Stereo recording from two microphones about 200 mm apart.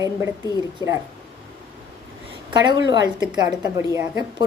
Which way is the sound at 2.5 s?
20° right (ahead or behind).